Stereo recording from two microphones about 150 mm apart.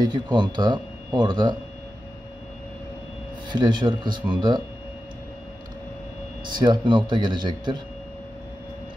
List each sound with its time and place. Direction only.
0.0 s speech: 30° right (ahead or behind)
3.4 s speech: 30° right (ahead or behind)
6.6 s speech: 30° right (ahead or behind)